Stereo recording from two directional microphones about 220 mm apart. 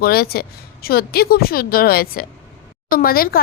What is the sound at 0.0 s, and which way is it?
A woman's voice, 45° left (ahead or behind).